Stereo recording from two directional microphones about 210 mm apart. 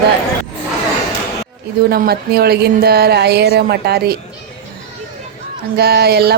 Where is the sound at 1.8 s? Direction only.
50° right (ahead or behind).